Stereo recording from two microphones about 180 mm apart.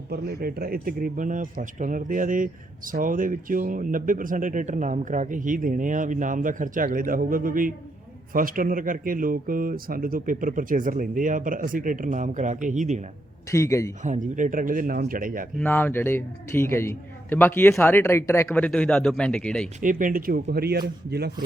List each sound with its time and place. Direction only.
0.1 s speech: 60° right (ahead or behind); by 13.1 s 40° right (ahead or behind)
13.5 s a man's voice: 15° left (ahead or behind)
14.0 s speech: 45° right (ahead or behind)
15.6 s a man's voice: 10° left (ahead or behind)
19.8 s speech: 45° right (ahead or behind); by 21.3 s 65° right (ahead or behind)